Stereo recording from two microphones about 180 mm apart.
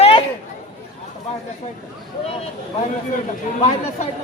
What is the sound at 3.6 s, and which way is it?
Speech, 40° left (ahead or behind).